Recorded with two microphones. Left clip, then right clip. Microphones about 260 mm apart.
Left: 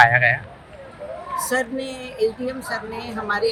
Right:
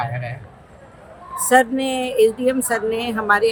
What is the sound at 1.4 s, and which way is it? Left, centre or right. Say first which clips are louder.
A woman's voice: right 11 dB; right.